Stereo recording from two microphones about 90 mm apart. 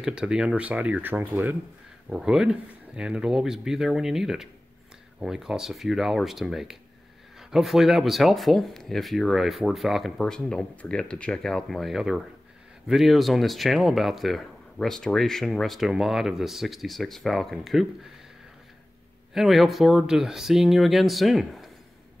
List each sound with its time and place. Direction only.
0.0 s speech: 10° right (ahead or behind)
2.0 s speech: 10° right (ahead or behind)
19.3 s speech: centre (ahead or behind)